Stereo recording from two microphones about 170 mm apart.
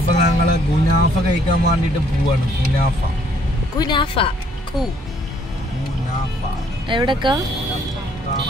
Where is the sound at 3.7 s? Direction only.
25° left (ahead or behind).